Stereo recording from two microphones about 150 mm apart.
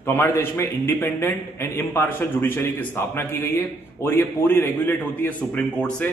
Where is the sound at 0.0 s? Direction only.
15° left (ahead or behind).